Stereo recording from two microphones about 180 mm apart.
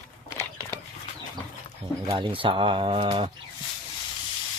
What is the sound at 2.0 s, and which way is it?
Speech, 25° right (ahead or behind).